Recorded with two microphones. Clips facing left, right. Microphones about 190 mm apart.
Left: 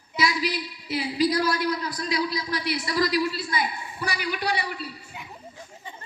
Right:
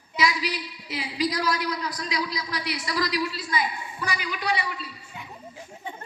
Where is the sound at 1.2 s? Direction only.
30° left (ahead or behind).